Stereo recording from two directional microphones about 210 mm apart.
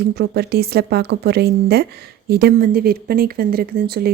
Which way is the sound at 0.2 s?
50° right (ahead or behind).